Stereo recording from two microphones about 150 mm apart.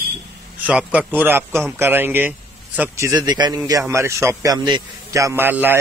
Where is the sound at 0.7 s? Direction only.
10° right (ahead or behind).